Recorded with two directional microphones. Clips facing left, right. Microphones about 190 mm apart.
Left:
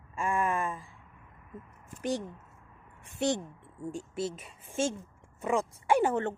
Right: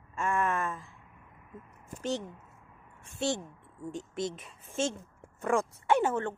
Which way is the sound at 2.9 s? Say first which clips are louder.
Left 2 dB; 20° left (ahead or behind).